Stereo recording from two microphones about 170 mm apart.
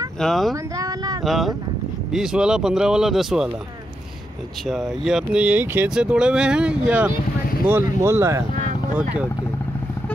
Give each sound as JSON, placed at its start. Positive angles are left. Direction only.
{"t": 0.2, "sound": "speech", "side_deg": 0}
{"t": 0.7, "sound": "a sound", "side_deg": -20}
{"t": 1.2, "sound": "speech", "side_deg": 0}
{"t": 4.6, "sound": "speech", "side_deg": 0}